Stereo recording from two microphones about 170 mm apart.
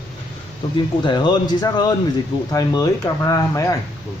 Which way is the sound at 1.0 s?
25° left (ahead or behind).